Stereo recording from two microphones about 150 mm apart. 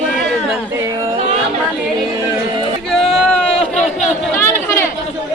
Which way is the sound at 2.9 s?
Centre (ahead or behind).